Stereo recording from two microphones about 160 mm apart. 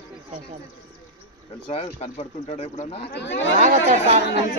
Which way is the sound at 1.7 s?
45° left (ahead or behind).